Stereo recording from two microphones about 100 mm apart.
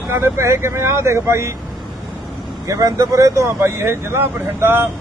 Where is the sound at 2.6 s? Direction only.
30° right (ahead or behind).